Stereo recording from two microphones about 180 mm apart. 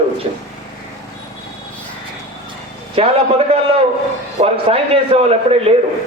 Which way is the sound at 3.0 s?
30° right (ahead or behind).